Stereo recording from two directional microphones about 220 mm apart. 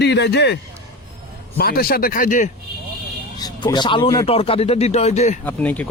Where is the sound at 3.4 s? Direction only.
20° left (ahead or behind).